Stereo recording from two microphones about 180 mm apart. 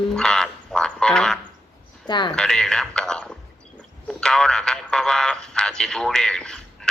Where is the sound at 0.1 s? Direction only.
5° left (ahead or behind).